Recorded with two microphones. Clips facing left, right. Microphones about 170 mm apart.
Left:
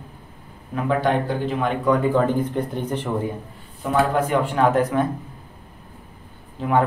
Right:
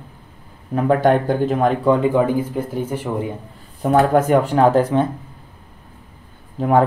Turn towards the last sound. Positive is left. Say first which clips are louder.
# right 5 dB
turn(degrees=-40)  # may be behind; listen again after turning